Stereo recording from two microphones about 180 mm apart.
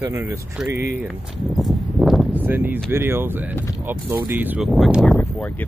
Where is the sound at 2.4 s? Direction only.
10° right (ahead or behind).